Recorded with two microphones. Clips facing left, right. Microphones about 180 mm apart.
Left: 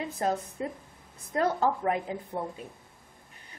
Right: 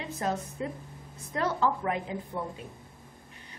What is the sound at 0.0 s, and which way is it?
A woman's voice, 35° left (ahead or behind).